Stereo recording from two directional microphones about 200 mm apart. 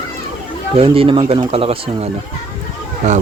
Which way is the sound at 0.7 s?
30° right (ahead or behind).